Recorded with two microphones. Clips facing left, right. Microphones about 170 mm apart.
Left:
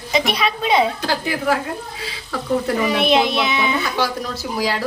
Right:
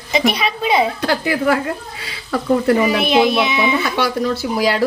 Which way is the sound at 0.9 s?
65° right (ahead or behind).